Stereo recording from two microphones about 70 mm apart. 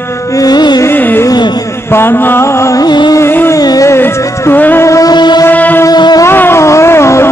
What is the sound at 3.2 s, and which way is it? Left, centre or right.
Music, left.